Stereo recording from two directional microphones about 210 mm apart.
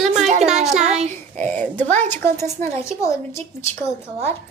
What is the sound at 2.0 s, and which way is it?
A woman's voice, 10° left (ahead or behind).